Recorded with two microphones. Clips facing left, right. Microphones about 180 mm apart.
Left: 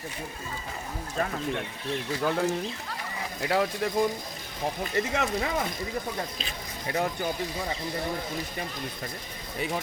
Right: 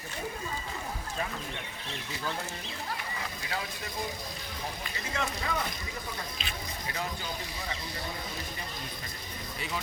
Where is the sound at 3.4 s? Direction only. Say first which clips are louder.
Left 16 dB; 75° left (ahead or behind).